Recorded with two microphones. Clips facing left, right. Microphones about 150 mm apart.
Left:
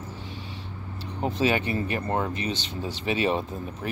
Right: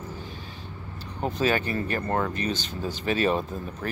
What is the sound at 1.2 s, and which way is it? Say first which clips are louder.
A man's voice: even; 25° left (ahead or behind).